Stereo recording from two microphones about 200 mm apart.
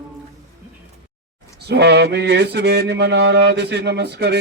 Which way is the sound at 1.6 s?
55° right (ahead or behind).